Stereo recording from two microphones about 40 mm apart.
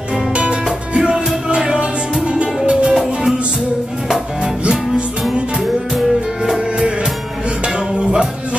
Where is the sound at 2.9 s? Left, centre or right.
Centre.